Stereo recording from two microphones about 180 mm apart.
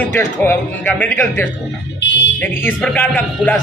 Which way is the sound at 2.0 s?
80° left.